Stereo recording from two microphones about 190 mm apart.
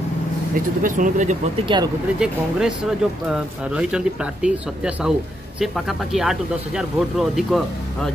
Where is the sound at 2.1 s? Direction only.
5° right (ahead or behind).